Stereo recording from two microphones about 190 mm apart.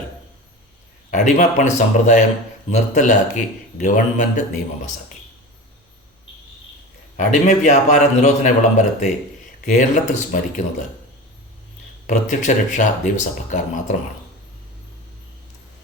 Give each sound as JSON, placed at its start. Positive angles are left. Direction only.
{"t": 1.1, "sound": "a man's voice", "side_deg": 40}
{"t": 7.2, "sound": "a man's voice", "side_deg": 40}
{"t": 9.7, "sound": "a man's voice", "side_deg": 40}
{"t": 12.0, "sound": "a man's voice", "side_deg": 40}